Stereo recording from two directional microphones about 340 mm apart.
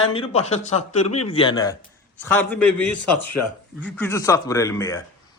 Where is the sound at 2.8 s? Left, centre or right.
Left.